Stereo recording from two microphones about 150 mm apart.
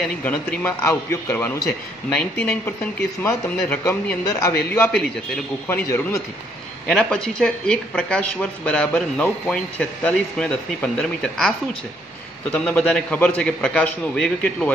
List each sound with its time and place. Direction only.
0.0 s speech: 10° left (ahead or behind)
6.9 s speech: 5° left (ahead or behind)
12.5 s speech: 10° left (ahead or behind)